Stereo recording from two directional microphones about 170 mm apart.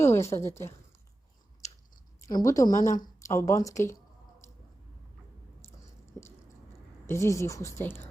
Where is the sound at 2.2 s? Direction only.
20° left (ahead or behind).